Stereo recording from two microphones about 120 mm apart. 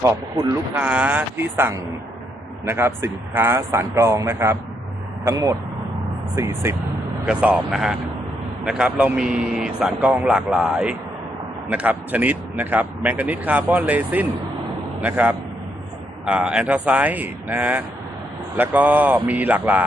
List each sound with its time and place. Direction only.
0.0 s a man's voice: 25° right (ahead or behind)
0.8 s a man's voice: 10° right (ahead or behind)
7.3 s speech: 5° right (ahead or behind)